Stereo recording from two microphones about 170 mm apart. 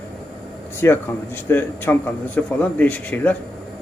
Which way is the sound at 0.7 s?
15° left (ahead or behind).